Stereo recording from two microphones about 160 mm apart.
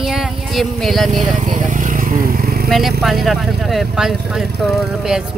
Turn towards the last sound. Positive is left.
turn(degrees=0)  # may be behind; listen again after turning